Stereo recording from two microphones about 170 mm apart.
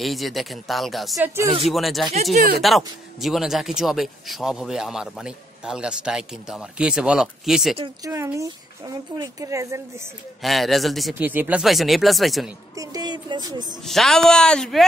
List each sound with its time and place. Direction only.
0.0 s speech: centre (ahead or behind)
1.2 s speech: 15° right (ahead or behind)
1.7 s speech: centre (ahead or behind)
8.0 s speech: 15° right (ahead or behind)
10.4 s speech: centre (ahead or behind)
12.7 s speech: 20° right (ahead or behind)
13.8 s speech: centre (ahead or behind)